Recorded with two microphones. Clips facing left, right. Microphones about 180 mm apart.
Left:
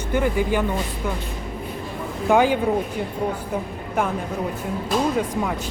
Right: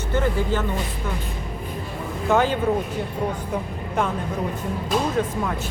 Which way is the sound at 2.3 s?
10° left (ahead or behind).